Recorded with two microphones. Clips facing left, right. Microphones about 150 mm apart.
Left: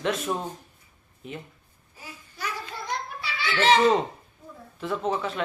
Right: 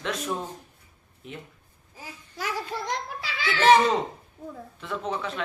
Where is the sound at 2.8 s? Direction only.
90° right.